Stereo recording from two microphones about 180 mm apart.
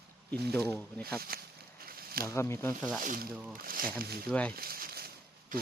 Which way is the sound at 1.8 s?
55° right (ahead or behind).